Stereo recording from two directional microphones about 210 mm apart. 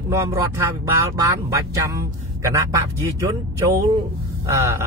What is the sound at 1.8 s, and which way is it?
Speech, 15° right (ahead or behind).